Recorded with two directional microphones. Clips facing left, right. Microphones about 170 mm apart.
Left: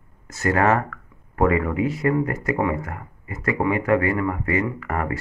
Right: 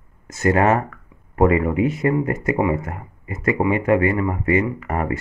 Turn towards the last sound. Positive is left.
turn(degrees=-20)  # may be behind; listen again after turning